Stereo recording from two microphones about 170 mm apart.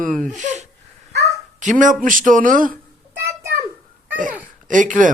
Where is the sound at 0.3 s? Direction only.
45° right (ahead or behind).